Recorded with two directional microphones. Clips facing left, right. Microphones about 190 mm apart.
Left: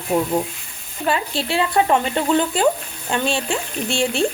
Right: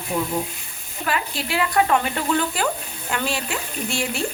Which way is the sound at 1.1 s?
30° left (ahead or behind).